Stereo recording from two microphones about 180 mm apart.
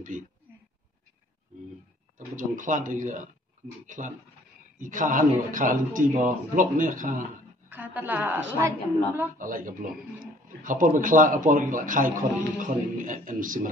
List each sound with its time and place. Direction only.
2.1 s speech: 45° right (ahead or behind)
7.7 s a woman's voice: 10° right (ahead or behind)
9.4 s speech: 50° right (ahead or behind)